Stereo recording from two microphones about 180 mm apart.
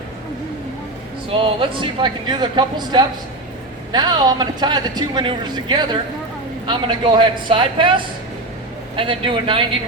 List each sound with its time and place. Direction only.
1.3 s speech: 30° right (ahead or behind)